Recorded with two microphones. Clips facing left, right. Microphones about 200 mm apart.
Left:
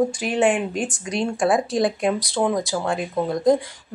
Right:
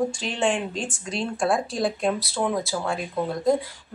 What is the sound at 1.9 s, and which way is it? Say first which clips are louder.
Speech: left 3 dB; 15° left (ahead or behind).